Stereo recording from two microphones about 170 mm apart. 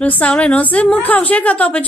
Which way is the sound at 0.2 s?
5° left (ahead or behind).